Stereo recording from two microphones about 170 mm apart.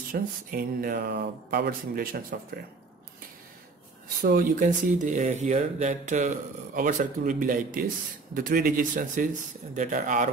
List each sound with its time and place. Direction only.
0.1 s speech: 60° right (ahead or behind)
4.2 s speech: 60° right (ahead or behind)